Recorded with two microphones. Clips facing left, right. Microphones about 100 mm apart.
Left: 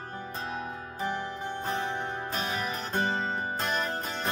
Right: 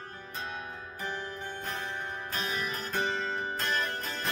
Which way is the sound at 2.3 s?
25° left (ahead or behind).